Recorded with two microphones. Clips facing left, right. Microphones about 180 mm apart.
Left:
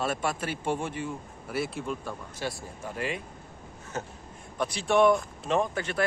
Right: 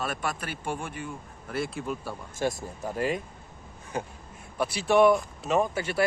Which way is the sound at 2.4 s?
45° right (ahead or behind).